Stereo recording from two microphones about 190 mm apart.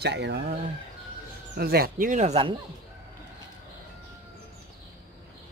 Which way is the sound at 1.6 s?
55° right (ahead or behind).